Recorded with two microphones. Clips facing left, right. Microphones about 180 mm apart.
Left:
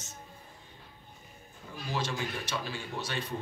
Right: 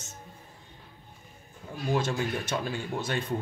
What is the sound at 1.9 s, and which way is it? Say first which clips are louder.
Speech: right 6 dB; 50° right (ahead or behind).